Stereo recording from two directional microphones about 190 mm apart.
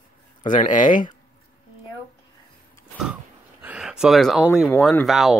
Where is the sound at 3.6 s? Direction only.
5° right (ahead or behind).